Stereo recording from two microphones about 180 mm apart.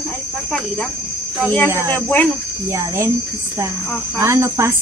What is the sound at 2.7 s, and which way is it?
Speech, 15° right (ahead or behind).